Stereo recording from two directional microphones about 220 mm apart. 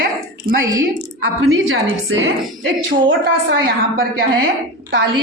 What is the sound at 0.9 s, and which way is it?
A man's voice, 65° right (ahead or behind).